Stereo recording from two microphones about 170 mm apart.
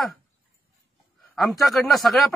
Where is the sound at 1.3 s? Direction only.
Centre (ahead or behind).